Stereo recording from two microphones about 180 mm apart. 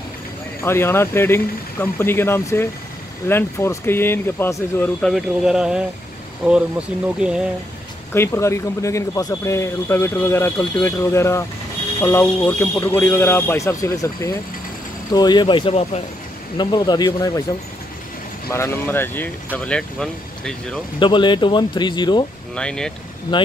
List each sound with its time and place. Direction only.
0.6 s speech: 15° left (ahead or behind)
5.1 s speech: 5° right (ahead or behind)
7.2 s speech: 5° right (ahead or behind)
8.1 s speech: 15° left (ahead or behind)
18.5 s speech: 15° left (ahead or behind)
21.0 s speech: 25° left (ahead or behind)
22.6 s speech: 5° left (ahead or behind)
23.3 s speech: 25° left (ahead or behind)